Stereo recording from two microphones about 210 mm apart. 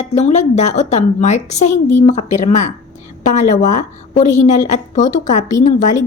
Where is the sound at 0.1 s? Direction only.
30° left (ahead or behind).